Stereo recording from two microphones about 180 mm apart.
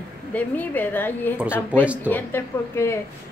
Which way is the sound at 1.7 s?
5° right (ahead or behind).